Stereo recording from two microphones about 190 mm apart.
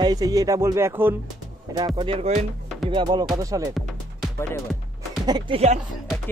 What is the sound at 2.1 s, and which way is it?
Speech, 35° right (ahead or behind).